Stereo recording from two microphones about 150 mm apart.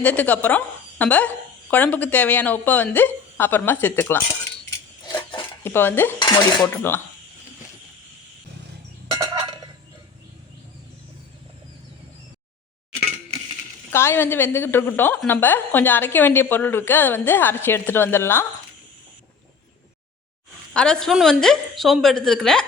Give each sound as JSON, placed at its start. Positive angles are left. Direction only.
{"t": 0.0, "sound": "a woman's voice", "side_deg": 10}
{"t": 5.0, "sound": "a sound", "side_deg": 30}
{"t": 5.6, "sound": "a woman's voice", "side_deg": 15}
{"t": 6.1, "sound": "dishes", "side_deg": 30}
{"t": 6.7, "sound": "a woman's voice", "side_deg": 15}
{"t": 9.1, "sound": "fowl", "side_deg": -35}
{"t": 13.9, "sound": "a woman's voice", "side_deg": 15}
{"t": 20.7, "sound": "a woman's voice", "side_deg": 5}